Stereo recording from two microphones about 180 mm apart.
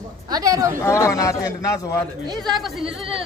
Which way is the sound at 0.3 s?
20° right (ahead or behind).